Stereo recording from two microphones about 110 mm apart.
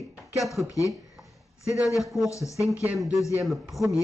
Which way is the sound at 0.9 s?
Centre (ahead or behind).